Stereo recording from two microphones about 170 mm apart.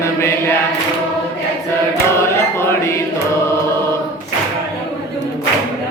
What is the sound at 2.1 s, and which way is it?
Music, 15° left (ahead or behind).